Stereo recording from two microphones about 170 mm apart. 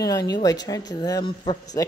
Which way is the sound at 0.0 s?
20° left (ahead or behind).